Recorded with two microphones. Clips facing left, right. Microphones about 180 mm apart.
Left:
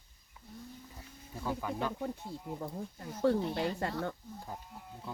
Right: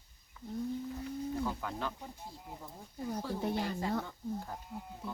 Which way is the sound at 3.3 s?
70° left (ahead or behind).